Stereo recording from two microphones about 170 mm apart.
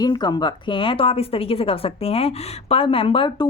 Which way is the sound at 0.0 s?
25° left (ahead or behind).